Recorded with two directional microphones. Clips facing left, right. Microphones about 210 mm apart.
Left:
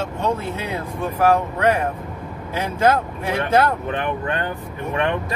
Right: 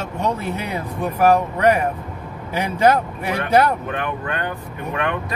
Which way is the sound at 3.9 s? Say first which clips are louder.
Left 2 dB; 30° left (ahead or behind).